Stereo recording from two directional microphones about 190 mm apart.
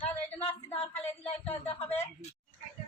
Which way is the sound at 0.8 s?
30° left (ahead or behind).